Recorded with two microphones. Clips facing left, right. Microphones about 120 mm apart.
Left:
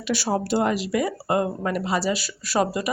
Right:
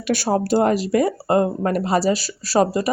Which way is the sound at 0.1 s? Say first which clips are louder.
Right 4 dB; 50° right (ahead or behind).